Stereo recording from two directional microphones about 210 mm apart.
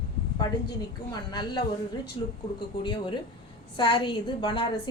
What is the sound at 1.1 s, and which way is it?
Speech, 20° left (ahead or behind).